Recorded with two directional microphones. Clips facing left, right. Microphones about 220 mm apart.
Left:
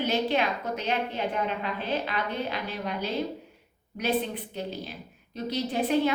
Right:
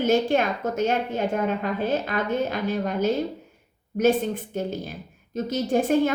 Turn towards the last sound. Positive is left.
turn(degrees=-45)  # may be behind; listen again after turning